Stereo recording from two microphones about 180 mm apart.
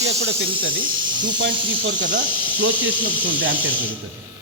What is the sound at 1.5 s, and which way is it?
Speech, 30° right (ahead or behind).